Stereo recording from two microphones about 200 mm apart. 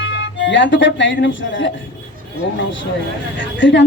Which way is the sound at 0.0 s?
65° left (ahead or behind).